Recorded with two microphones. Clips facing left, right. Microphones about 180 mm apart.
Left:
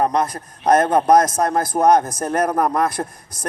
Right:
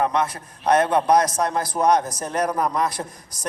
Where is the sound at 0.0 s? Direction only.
40° left (ahead or behind).